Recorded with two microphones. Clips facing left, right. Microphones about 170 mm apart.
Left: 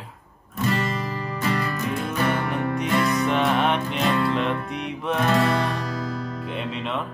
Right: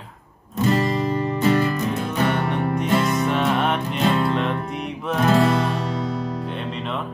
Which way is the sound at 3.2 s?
Centre (ahead or behind).